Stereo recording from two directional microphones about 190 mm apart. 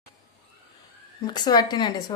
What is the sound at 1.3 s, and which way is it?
Speech, 20° left (ahead or behind).